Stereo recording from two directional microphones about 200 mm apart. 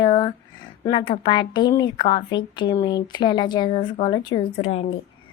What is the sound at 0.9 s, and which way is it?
A woman's voice, 25° left (ahead or behind).